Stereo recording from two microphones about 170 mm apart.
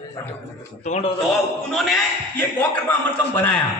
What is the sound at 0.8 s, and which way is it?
Speech, 45° left (ahead or behind).